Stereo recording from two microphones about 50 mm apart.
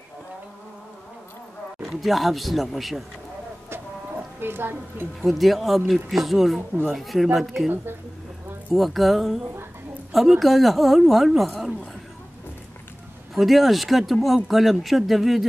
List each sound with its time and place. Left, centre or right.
1.9 s speech: centre
4.4 s a woman's voice: right
5.2 s speech: centre
8.7 s speech: centre
10.4 s speech: centre
13.3 s speech: centre